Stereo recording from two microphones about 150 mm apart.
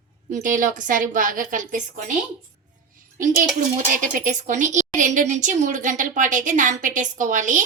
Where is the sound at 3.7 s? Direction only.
60° right (ahead or behind).